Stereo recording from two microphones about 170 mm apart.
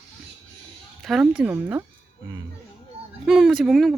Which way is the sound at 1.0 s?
Centre (ahead or behind).